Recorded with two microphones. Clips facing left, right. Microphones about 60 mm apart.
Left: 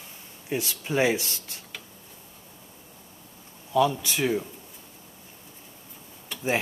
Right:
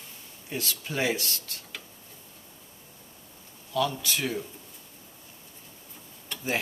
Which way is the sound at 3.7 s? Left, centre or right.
Centre.